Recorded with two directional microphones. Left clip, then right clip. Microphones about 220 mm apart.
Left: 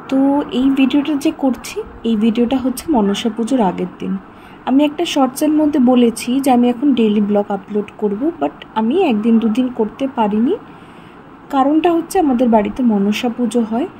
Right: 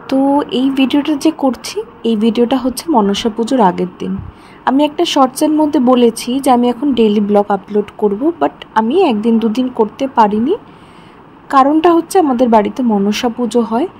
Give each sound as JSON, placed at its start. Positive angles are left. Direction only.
{"t": 0.0, "sound": "speech", "side_deg": -25}